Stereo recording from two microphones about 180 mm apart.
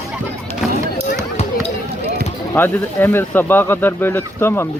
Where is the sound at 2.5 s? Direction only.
10° left (ahead or behind).